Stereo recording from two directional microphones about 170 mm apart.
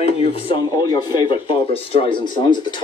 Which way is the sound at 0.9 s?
25° left (ahead or behind).